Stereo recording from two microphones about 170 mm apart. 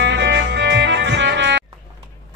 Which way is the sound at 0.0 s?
90° right.